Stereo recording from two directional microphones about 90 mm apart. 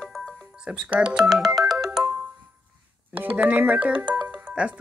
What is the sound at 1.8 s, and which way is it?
Music, 15° right (ahead or behind).